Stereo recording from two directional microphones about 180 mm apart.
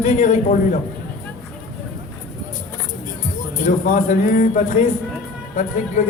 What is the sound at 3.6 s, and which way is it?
A man's voice, 45° left (ahead or behind).